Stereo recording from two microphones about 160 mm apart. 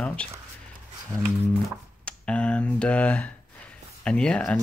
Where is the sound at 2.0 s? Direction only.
5° left (ahead or behind).